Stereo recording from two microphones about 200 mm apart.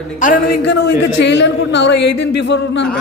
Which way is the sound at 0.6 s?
60° left (ahead or behind).